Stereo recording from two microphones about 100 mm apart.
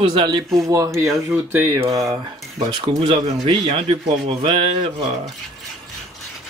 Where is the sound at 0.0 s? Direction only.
50° right (ahead or behind).